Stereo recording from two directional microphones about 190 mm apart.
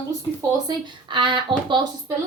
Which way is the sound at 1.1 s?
25° right (ahead or behind).